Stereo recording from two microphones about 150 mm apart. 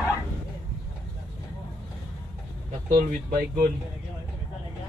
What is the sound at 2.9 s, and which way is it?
Speech, 70° right (ahead or behind).